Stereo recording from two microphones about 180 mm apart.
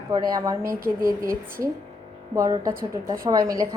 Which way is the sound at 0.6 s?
55° right (ahead or behind).